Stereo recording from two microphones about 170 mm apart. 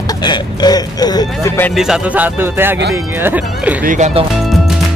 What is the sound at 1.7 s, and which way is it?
Speech, 5° right (ahead or behind).